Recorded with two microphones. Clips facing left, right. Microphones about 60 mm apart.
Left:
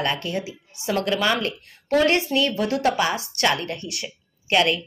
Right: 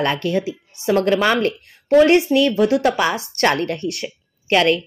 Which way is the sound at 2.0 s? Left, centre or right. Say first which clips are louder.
Right 7 dB; right.